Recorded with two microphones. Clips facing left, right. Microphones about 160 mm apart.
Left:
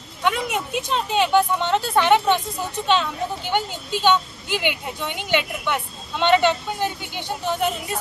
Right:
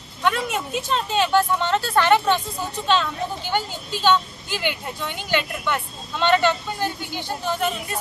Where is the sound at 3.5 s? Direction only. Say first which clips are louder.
Left 2 dB; 20° left (ahead or behind).